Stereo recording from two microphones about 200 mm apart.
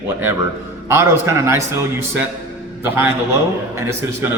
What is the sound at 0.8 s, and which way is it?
A man's voice, 15° right (ahead or behind).